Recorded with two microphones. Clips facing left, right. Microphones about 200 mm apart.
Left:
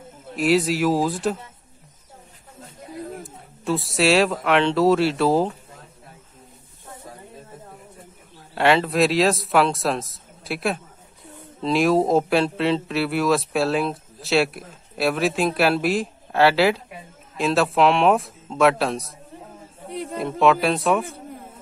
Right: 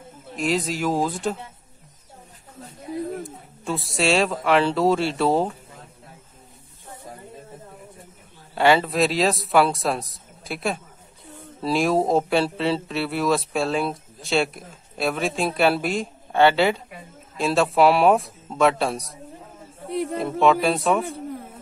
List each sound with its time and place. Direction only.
0.4 s speech: 5° left (ahead or behind)
3.3 s speech: centre (ahead or behind)
8.5 s speech: centre (ahead or behind)
20.2 s speech: centre (ahead or behind)